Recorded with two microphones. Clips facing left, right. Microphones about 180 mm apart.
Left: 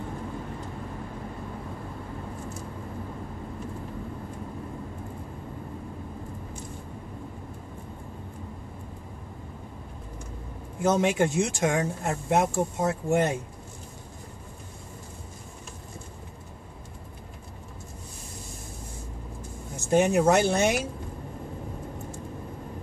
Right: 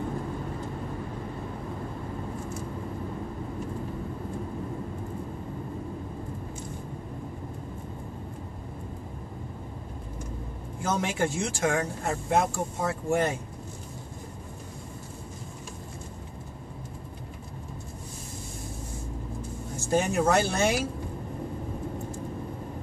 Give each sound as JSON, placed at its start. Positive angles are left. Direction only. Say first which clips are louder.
{"t": 10.8, "sound": "speech", "louder": "left 5 dB", "side_deg": 20}
{"t": 19.9, "sound": "speech", "louder": "left 3 dB", "side_deg": 20}